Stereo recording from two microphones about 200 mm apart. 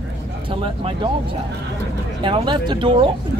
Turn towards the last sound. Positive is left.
turn(degrees=-25)  # may be behind; listen again after turning